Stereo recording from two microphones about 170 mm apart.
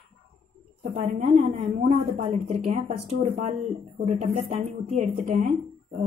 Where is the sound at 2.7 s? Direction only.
40° right (ahead or behind).